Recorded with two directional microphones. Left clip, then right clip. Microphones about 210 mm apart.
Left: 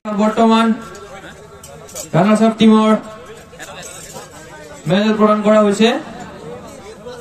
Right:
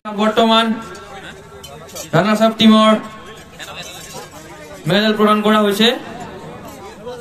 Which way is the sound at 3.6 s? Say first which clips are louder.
Right 2 dB; 35° left (ahead or behind).